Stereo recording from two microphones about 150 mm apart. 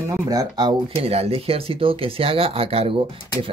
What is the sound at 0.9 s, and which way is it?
Speech, 40° right (ahead or behind).